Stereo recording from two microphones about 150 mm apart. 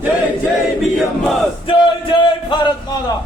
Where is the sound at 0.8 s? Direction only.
Centre (ahead or behind).